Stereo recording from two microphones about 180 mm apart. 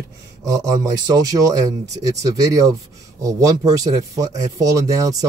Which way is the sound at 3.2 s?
20° right (ahead or behind).